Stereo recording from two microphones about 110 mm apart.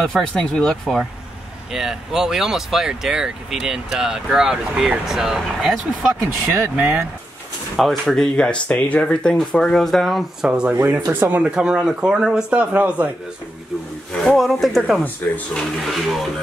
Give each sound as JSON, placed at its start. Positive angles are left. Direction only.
{"t": 0.0, "sound": "a man's voice", "side_deg": 5}
{"t": 7.8, "sound": "speech", "side_deg": 0}
{"t": 10.7, "sound": "a man's voice", "side_deg": -20}
{"t": 11.4, "sound": "a man's voice", "side_deg": -5}
{"t": 14.1, "sound": "speech", "side_deg": 5}